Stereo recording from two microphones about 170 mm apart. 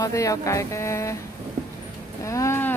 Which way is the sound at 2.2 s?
15° left (ahead or behind).